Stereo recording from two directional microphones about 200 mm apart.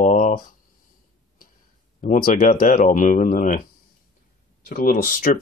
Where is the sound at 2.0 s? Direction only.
45° left (ahead or behind).